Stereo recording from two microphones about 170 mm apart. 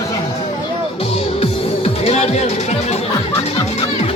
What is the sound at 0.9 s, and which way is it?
Music, 35° left (ahead or behind).